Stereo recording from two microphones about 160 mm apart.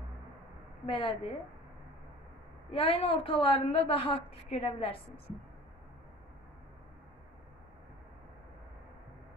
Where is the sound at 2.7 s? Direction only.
35° left (ahead or behind).